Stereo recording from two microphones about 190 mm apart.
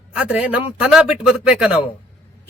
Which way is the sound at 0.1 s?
5° right (ahead or behind).